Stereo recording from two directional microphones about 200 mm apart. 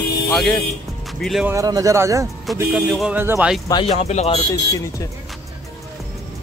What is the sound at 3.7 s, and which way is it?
Speech, 25° left (ahead or behind).